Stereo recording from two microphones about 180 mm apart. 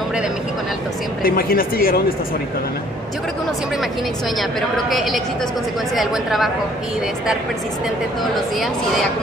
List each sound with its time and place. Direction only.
1.2 s speech: 55° left (ahead or behind)
4.4 s speech: centre (ahead or behind)